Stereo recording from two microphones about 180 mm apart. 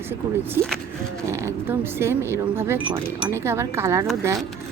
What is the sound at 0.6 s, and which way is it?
Speech, 15° right (ahead or behind).